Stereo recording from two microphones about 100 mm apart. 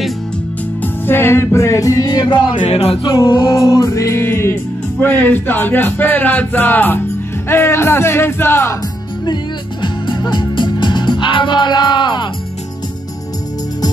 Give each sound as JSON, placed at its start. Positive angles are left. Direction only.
{"t": 1.0, "sound": "music", "side_deg": 25}
{"t": 2.7, "sound": "music", "side_deg": 75}
{"t": 3.3, "sound": "music", "side_deg": 50}
{"t": 3.5, "sound": "speech", "side_deg": 30}
{"t": 9.2, "sound": "music", "side_deg": 50}